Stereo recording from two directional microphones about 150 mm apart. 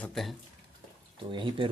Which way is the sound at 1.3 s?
35° right (ahead or behind).